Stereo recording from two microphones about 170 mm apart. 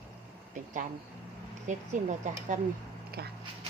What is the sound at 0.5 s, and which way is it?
Speech, 50° right (ahead or behind).